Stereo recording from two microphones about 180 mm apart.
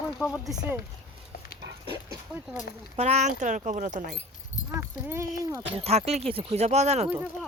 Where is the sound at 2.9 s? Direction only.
35° right (ahead or behind).